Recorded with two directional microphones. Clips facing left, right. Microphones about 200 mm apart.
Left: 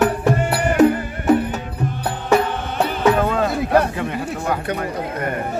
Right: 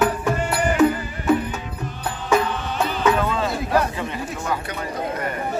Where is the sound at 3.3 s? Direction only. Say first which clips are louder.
Left 4 dB; 55° left (ahead or behind).